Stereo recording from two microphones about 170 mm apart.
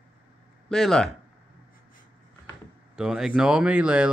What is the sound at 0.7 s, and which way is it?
Speech, centre (ahead or behind).